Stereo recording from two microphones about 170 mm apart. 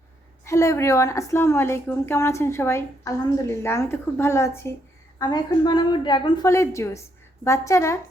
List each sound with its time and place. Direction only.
0.4 s a woman's voice: 15° left (ahead or behind)